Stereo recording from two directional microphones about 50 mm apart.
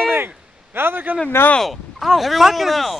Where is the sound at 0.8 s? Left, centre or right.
Right.